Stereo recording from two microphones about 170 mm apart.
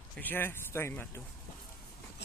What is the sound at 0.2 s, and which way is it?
Speech, 10° left (ahead or behind).